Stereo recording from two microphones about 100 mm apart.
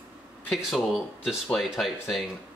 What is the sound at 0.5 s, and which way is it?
Speech, centre (ahead or behind).